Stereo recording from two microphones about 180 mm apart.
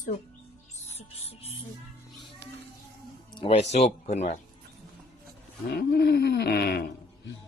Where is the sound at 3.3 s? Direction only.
30° left (ahead or behind).